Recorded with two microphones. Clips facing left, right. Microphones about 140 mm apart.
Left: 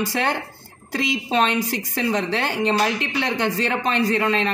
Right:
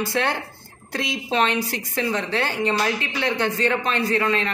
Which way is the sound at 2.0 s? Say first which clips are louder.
Left 1 dB; 15° left (ahead or behind).